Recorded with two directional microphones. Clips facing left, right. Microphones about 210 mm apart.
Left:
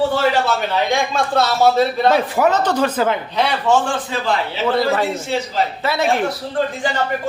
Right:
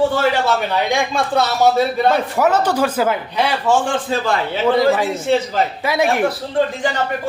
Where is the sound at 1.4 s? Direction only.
15° right (ahead or behind).